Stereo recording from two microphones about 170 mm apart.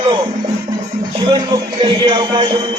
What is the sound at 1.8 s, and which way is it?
Speech, 25° right (ahead or behind).